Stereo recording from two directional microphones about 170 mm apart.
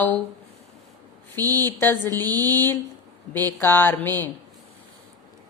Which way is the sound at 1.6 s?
10° left (ahead or behind).